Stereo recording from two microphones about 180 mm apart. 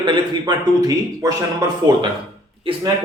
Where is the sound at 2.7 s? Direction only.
30° right (ahead or behind).